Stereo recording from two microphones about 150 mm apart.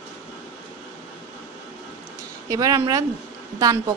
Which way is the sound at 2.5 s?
25° right (ahead or behind).